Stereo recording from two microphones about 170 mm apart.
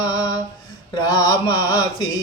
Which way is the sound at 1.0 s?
25° left (ahead or behind).